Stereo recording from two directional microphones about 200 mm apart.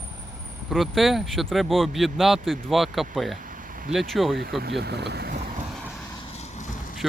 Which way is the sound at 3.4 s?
45° right (ahead or behind).